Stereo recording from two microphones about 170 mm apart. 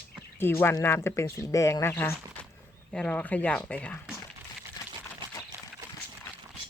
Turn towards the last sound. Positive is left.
turn(degrees=-15)  # may be behind; listen again after turning